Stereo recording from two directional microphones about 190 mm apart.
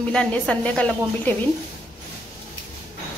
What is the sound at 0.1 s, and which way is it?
A woman's voice, 5° left (ahead or behind).